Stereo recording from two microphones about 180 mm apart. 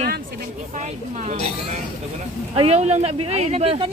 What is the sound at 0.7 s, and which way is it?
Speech, 45° right (ahead or behind).